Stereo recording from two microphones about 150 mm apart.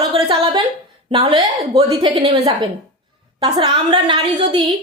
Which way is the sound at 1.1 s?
40° right (ahead or behind).